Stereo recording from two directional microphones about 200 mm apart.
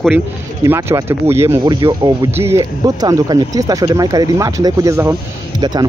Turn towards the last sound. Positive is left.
turn(degrees=-15)  # may be behind; listen again after turning